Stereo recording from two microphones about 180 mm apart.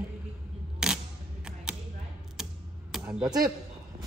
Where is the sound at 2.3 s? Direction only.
Centre (ahead or behind).